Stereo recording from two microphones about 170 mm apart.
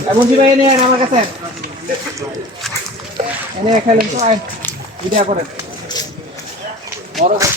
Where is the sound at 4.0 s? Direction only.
45° right (ahead or behind).